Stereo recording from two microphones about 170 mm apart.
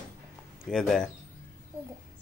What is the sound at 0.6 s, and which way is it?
Speech, 5° left (ahead or behind).